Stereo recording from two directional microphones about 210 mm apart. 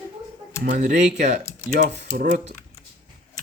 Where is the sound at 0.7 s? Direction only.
35° right (ahead or behind).